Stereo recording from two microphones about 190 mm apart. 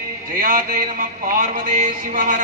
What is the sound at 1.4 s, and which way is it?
Speech, 40° right (ahead or behind).